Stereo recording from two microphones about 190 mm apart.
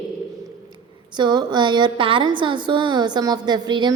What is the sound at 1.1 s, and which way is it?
A woman's voice, 20° right (ahead or behind).